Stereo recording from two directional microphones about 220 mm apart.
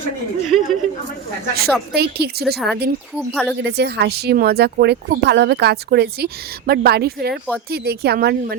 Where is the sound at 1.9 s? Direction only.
45° right (ahead or behind).